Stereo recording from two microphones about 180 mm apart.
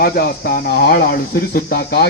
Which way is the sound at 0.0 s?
55° left (ahead or behind).